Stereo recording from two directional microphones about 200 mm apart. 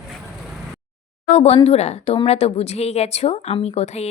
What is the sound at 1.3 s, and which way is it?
A woman's voice, 30° left (ahead or behind).